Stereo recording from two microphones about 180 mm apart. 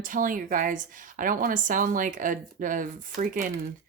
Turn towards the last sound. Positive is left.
turn(degrees=-50)  # may be behind; listen again after turning